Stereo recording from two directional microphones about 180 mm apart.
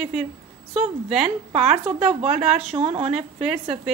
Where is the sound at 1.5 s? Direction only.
35° right (ahead or behind).